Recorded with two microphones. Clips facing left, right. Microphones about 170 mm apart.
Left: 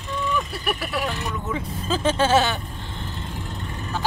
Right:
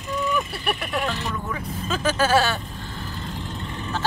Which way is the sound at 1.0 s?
20° left (ahead or behind).